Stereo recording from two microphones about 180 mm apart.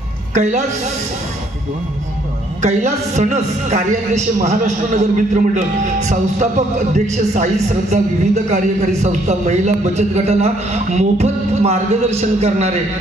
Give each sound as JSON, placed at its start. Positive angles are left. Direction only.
{"t": 0.3, "sound": "a woman's voice", "side_deg": -40}
{"t": 2.6, "sound": "a man's voice", "side_deg": -40}